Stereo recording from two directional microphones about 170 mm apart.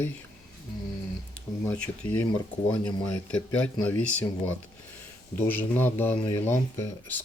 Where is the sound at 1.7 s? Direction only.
10° left (ahead or behind).